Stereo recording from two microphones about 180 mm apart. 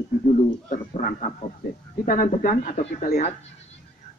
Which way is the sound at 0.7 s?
45° left (ahead or behind).